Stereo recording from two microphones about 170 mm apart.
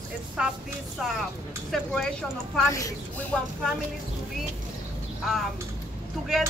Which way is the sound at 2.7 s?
20° left (ahead or behind).